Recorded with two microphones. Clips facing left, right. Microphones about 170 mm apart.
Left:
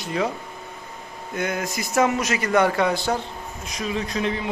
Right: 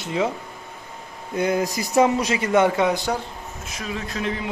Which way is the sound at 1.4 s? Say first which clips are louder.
Right 5 dB; 30° right (ahead or behind).